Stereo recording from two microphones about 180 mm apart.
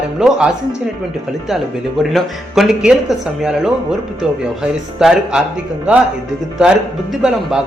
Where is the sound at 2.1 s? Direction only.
Centre (ahead or behind).